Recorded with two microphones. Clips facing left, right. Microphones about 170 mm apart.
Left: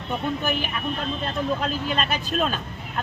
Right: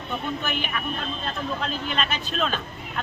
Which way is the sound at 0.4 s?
35° left (ahead or behind).